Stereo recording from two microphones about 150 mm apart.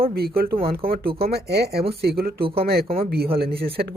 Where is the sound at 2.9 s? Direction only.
90° right.